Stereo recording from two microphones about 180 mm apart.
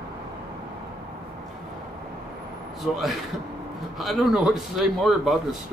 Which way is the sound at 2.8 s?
Centre (ahead or behind).